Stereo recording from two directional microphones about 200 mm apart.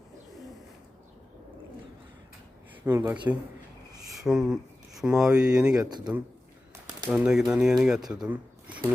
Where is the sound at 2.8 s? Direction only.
10° right (ahead or behind).